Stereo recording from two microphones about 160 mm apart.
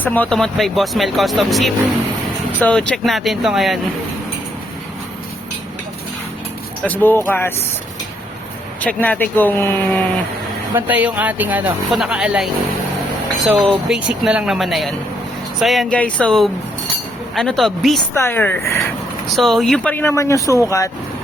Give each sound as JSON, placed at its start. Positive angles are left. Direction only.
{"t": 0.0, "sound": "speech", "side_deg": 10}
{"t": 6.8, "sound": "speech", "side_deg": 10}
{"t": 8.8, "sound": "speech", "side_deg": 10}
{"t": 10.8, "sound": "speech", "side_deg": -10}
{"t": 18.1, "sound": "speech", "side_deg": 15}
{"t": 19.4, "sound": "speech", "side_deg": 0}